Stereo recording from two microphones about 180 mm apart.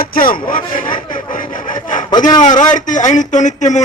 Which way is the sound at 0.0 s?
55° left (ahead or behind).